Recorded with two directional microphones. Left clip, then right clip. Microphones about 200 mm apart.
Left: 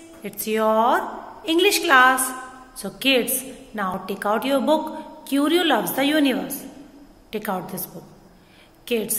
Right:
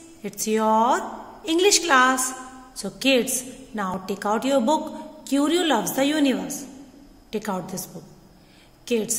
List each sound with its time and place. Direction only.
0.2 s a woman's voice: 25° right (ahead or behind)